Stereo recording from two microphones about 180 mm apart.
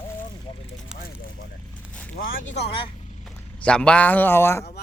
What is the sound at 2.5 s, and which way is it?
Speech, 70° left (ahead or behind).